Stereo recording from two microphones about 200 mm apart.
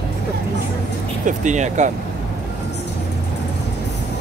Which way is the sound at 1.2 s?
35° right (ahead or behind).